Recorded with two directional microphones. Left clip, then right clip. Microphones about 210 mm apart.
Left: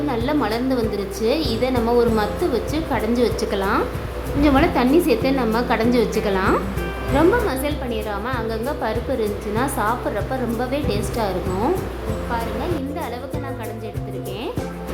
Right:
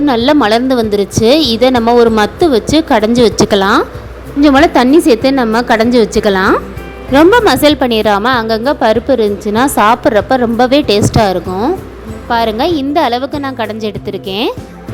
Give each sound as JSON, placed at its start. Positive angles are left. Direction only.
{"t": 0.1, "sound": "a woman's voice", "side_deg": -40}